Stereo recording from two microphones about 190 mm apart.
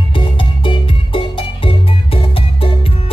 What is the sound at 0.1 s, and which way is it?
Music, 25° left (ahead or behind).